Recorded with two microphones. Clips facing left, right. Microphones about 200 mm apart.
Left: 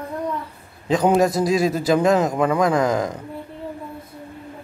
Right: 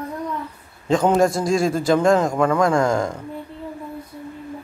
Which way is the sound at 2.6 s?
20° left (ahead or behind).